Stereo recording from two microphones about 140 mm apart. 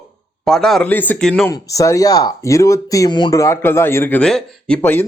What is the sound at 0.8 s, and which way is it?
Speech, 15° left (ahead or behind).